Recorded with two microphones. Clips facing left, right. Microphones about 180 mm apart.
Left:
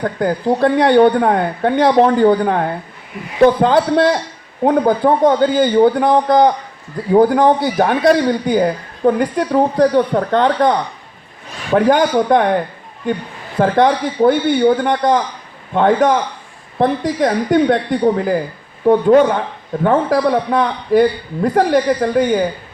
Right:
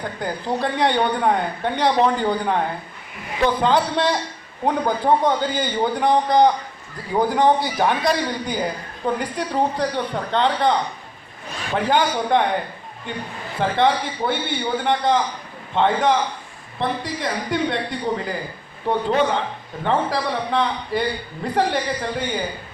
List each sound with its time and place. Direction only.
0.0 s a man's voice: 50° left (ahead or behind)
13.6 s a man's voice: 45° left (ahead or behind)